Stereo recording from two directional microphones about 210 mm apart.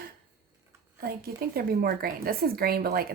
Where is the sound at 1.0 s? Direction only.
45° right (ahead or behind).